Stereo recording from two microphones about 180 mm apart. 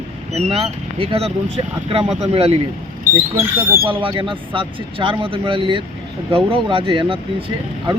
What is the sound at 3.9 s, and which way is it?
Speech, 30° right (ahead or behind).